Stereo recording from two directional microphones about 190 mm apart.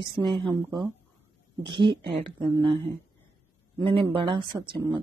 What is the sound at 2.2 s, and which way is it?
Speech, 25° right (ahead or behind).